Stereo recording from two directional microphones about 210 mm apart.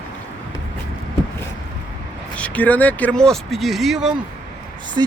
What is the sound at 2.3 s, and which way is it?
Speech, 5° left (ahead or behind).